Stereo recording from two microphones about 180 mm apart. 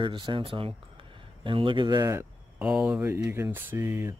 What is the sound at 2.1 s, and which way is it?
Speech, 10° right (ahead or behind).